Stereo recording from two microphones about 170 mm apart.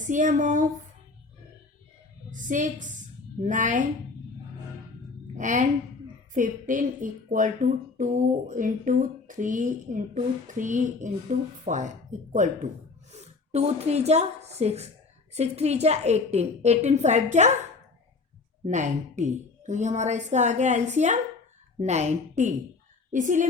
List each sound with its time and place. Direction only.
0.0 s speech: 50° right (ahead or behind)
2.3 s a woman's voice: 50° right (ahead or behind)
5.4 s a woman's voice: 45° right (ahead or behind)
18.6 s speech: 45° right (ahead or behind)